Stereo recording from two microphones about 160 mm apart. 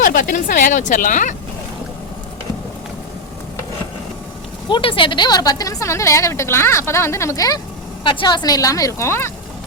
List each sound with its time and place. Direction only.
0.0 s speech: 60° left (ahead or behind)
4.7 s a woman's voice: 35° left (ahead or behind); by 9.3 s 15° left (ahead or behind)